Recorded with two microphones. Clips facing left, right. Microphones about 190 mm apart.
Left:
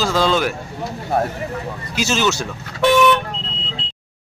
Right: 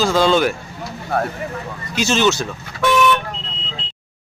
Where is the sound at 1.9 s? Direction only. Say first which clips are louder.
Right 3 dB; 5° left (ahead or behind).